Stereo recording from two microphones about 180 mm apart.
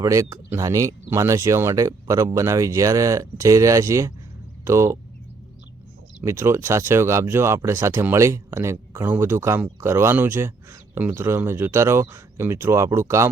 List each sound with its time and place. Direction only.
0.0 s speech: 15° right (ahead or behind)
6.1 s speech: 15° right (ahead or behind)